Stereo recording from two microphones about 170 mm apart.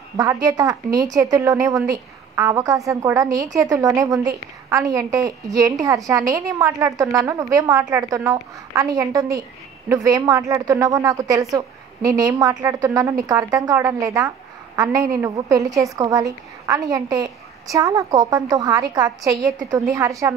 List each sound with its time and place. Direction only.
0.2 s a woman's voice: 20° right (ahead or behind)